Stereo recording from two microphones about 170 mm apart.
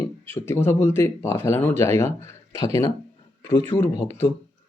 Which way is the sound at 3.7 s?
15° left (ahead or behind).